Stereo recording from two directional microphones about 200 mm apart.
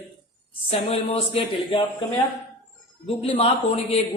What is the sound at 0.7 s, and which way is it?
Speech, 30° left (ahead or behind).